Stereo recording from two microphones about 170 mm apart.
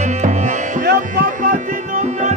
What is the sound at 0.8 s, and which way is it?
Music, 65° right (ahead or behind).